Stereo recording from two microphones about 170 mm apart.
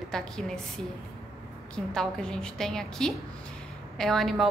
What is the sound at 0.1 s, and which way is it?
Speech, 5° left (ahead or behind).